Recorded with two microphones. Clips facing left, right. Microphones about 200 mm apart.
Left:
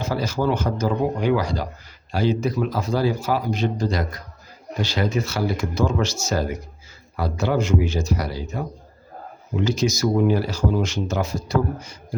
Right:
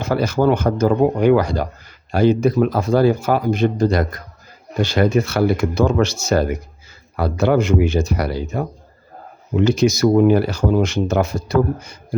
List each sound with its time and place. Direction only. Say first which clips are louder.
0.0 s speech: right 6 dB; 60° right (ahead or behind)